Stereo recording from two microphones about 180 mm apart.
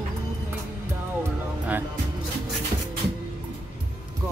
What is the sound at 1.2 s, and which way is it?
Music, 10° right (ahead or behind).